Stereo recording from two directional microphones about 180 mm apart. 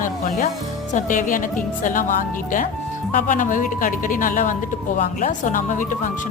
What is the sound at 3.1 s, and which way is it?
Speech, 45° left (ahead or behind).